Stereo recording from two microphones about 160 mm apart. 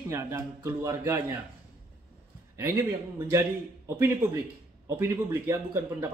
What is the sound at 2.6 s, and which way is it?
Speech, 15° right (ahead or behind).